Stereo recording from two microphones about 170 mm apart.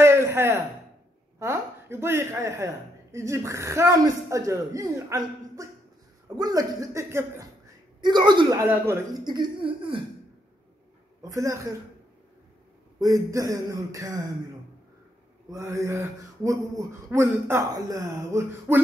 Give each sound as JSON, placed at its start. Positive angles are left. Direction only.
{"t": 0.0, "sound": "a sound", "side_deg": -15}
{"t": 1.4, "sound": "a woman's voice", "side_deg": -15}
{"t": 9.2, "sound": "speech", "side_deg": -25}
{"t": 11.2, "sound": "speech", "side_deg": -20}
{"t": 13.0, "sound": "speech", "side_deg": -20}
{"t": 15.5, "sound": "a woman's voice", "side_deg": -20}